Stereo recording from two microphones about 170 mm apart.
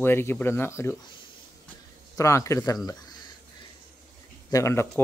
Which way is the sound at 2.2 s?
20° left (ahead or behind).